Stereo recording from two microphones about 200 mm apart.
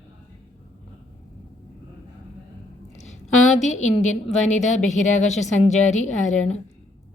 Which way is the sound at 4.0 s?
35° left (ahead or behind).